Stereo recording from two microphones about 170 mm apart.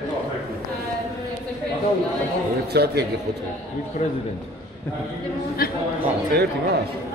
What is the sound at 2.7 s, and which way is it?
Speech, 70° right (ahead or behind).